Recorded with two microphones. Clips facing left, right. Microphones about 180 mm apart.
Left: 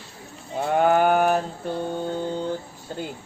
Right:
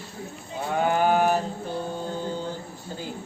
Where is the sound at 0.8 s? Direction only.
50° left (ahead or behind).